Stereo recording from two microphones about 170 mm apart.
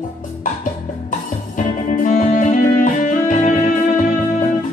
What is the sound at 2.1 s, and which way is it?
Music, 50° left (ahead or behind).